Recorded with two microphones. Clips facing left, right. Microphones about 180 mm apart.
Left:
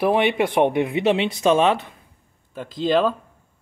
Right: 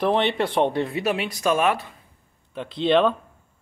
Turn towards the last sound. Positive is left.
turn(degrees=0)  # may be behind; listen again after turning